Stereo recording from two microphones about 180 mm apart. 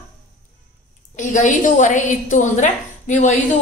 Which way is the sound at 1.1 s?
45° left (ahead or behind).